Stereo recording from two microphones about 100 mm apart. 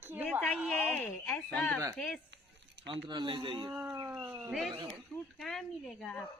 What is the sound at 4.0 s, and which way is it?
Speech, 25° right (ahead or behind).